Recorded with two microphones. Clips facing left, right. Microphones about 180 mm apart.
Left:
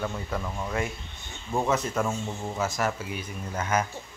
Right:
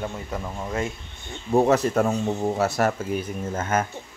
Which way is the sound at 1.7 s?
65° right (ahead or behind).